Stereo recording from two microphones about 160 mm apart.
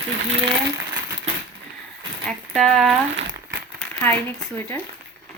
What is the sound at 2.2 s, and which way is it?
Speech, centre (ahead or behind).